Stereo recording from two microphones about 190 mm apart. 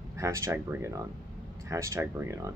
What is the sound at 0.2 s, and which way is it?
Speech, 15° right (ahead or behind).